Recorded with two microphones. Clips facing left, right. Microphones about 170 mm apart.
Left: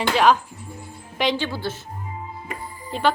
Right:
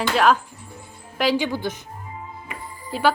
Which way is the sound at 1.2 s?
10° right (ahead or behind).